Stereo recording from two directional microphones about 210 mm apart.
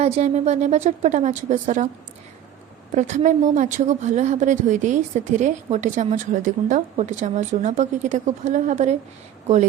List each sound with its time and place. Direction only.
0.0 s a woman's voice: 30° right (ahead or behind)
2.9 s a woman's voice: 35° right (ahead or behind)